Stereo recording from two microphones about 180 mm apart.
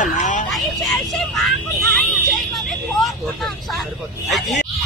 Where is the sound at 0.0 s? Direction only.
45° left (ahead or behind).